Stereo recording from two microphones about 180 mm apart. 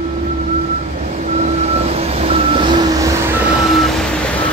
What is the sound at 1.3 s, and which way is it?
Vehicle, 35° right (ahead or behind).